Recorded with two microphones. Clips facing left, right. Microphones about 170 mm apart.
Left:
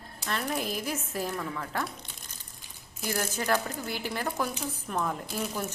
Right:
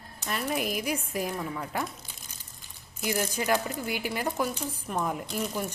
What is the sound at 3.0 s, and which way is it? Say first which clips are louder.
A woman's voice: right 2 dB; 10° right (ahead or behind).